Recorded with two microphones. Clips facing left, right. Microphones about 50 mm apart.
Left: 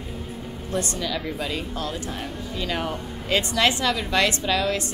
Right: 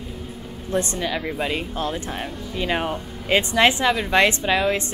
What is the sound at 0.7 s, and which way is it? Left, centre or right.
A woman's voice, right.